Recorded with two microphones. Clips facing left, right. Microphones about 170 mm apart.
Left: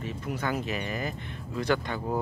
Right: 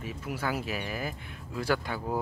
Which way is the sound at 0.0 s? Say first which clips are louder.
Left 2 dB; 5° right (ahead or behind).